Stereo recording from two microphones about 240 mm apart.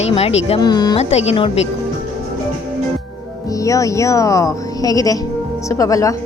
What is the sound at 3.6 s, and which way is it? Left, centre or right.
Speech, centre.